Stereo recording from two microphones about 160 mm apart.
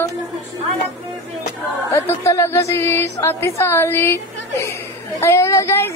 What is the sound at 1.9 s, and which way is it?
Speech, 15° left (ahead or behind).